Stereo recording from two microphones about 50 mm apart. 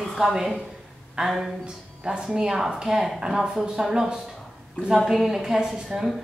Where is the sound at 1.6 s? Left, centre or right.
Centre.